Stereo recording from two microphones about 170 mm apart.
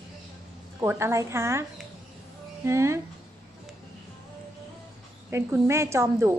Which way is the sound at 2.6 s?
15° right (ahead or behind).